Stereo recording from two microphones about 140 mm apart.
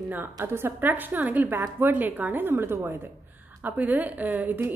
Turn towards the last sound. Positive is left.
turn(degrees=-15)  # may be behind; listen again after turning